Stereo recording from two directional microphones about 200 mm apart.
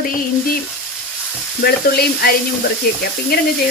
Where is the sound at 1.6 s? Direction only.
50° left (ahead or behind).